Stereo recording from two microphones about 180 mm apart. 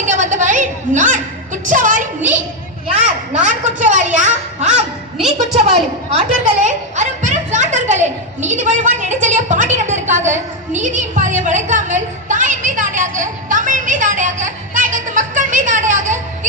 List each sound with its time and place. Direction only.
0.0 s a sound: 45° right (ahead or behind)
1.6 s music: 45° right (ahead or behind)
2.9 s a child's voice: 40° right (ahead or behind)